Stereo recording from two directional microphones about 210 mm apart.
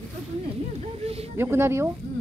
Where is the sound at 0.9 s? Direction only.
30° right (ahead or behind).